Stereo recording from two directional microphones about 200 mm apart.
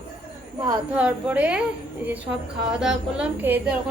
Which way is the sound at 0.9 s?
5° right (ahead or behind).